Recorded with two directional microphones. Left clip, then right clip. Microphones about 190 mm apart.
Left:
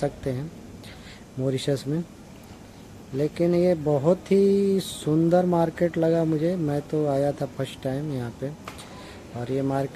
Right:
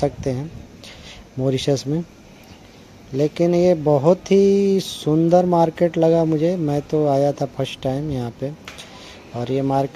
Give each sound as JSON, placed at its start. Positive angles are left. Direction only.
{"t": 0.3, "sound": "speech", "side_deg": -35}
{"t": 3.2, "sound": "speech", "side_deg": -35}
{"t": 9.4, "sound": "speech", "side_deg": -35}